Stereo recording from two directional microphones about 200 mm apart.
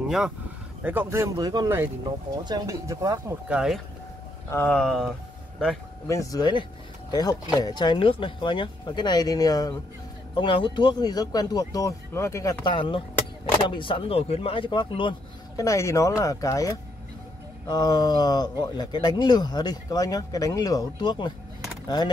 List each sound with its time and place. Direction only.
0.8 s speech: 10° right (ahead or behind)
4.5 s speech: 10° left (ahead or behind)
6.0 s speech: 15° left (ahead or behind)